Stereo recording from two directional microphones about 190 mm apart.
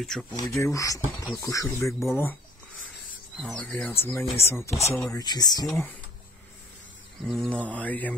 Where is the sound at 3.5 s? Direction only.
5° left (ahead or behind).